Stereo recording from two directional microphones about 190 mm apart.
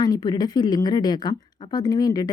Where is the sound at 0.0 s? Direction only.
20° left (ahead or behind).